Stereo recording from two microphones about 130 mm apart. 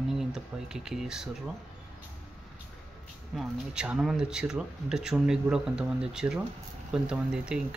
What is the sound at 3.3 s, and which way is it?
Speech, 5° right (ahead or behind).